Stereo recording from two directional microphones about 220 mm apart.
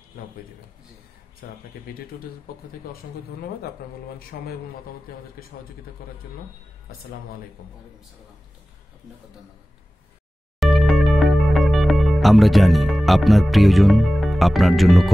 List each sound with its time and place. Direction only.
0.2 s a sound: 45° left (ahead or behind)
1.4 s a man's voice: 40° left (ahead or behind)
3.8 s a man's voice: 45° left (ahead or behind)
10.6 s music: centre (ahead or behind)